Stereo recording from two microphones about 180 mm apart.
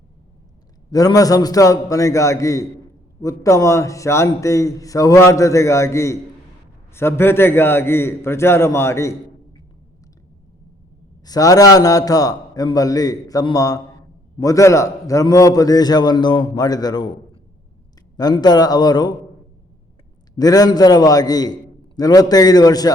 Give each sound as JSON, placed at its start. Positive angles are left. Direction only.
{"t": 0.9, "sound": "a man's voice", "side_deg": 20}
{"t": 11.3, "sound": "a man's voice", "side_deg": 20}
{"t": 18.2, "sound": "a man's voice", "side_deg": 20}
{"t": 20.3, "sound": "a man's voice", "side_deg": 20}